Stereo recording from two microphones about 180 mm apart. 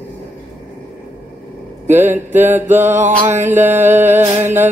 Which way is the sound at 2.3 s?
10° right (ahead or behind).